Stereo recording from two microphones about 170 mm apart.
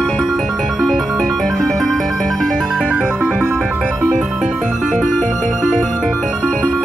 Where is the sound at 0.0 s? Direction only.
Centre (ahead or behind).